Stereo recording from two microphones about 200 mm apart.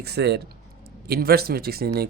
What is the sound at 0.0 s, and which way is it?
Speech, 55° right (ahead or behind).